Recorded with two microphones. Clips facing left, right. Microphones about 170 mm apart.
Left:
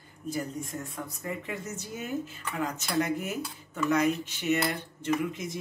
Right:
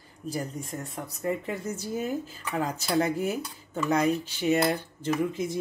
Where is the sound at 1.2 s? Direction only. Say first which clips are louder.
Right 7 dB; 30° right (ahead or behind).